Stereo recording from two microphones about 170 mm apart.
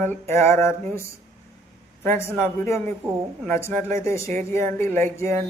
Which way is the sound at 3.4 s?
15° left (ahead or behind).